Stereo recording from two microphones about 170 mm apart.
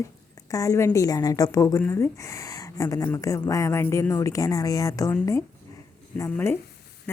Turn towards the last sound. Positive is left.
turn(degrees=15)  # may be behind; listen again after turning